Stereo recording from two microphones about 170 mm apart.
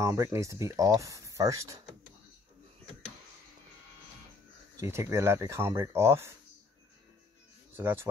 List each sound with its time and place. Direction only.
0.0 s speech: 20° right (ahead or behind)
4.7 s speech: 15° right (ahead or behind)
7.7 s speech: 15° right (ahead or behind)